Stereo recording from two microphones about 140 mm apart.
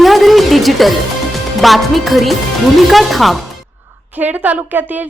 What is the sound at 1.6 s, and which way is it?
Speech, centre (ahead or behind).